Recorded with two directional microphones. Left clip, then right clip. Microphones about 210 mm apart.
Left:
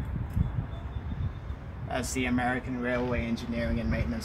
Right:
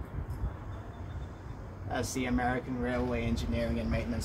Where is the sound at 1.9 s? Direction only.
40° left (ahead or behind).